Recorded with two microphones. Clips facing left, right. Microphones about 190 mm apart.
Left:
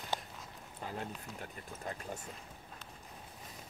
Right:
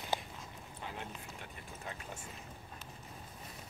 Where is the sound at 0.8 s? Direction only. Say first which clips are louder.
Left 4 dB; 40° left (ahead or behind).